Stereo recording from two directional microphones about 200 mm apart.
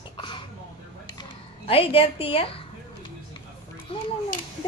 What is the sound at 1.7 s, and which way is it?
A woman's voice, 30° left (ahead or behind).